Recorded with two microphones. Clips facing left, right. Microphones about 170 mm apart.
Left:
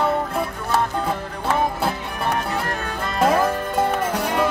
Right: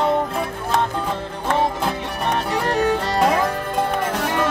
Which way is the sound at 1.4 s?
5° left (ahead or behind).